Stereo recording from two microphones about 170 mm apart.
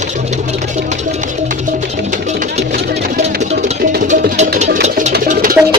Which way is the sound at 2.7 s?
70° right (ahead or behind).